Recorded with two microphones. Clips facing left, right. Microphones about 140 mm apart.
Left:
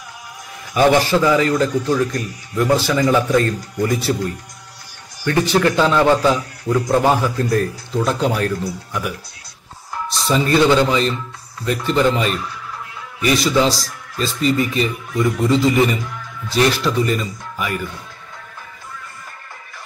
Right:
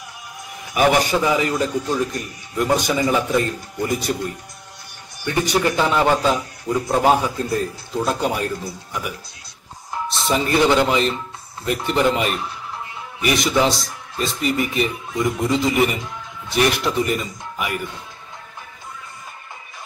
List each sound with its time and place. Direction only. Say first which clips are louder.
0.7 s a man's voice: left 3 dB; 15° right (ahead or behind)
5.2 s a man's voice: left 4 dB; 15° right (ahead or behind)
10.2 s a man's voice: left 3 dB; 20° right (ahead or behind)